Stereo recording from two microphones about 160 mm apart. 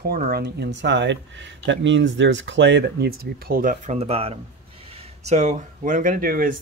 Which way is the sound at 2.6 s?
90° right.